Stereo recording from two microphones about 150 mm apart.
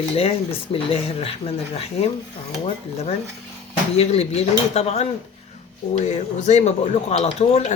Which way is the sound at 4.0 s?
45° left (ahead or behind).